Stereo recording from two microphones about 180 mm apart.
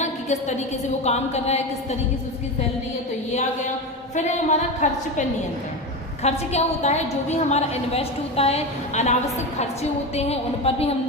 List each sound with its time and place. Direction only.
0.0 s a sound: 40° left (ahead or behind)
1.0 s a woman's voice: 35° left (ahead or behind)
4.1 s a woman's voice: 40° left (ahead or behind)
6.2 s a woman's voice: 35° left (ahead or behind)
10.2 s a woman's voice: 35° left (ahead or behind)